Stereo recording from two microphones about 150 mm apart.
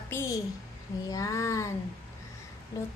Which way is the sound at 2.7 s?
20° left (ahead or behind).